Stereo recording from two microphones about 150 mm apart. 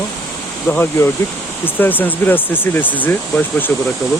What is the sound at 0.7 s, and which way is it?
Speech, 15° left (ahead or behind).